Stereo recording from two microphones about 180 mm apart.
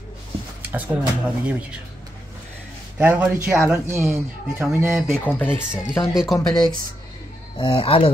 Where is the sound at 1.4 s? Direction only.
5° right (ahead or behind).